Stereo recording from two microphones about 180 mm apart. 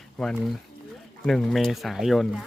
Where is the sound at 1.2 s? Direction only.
Centre (ahead or behind).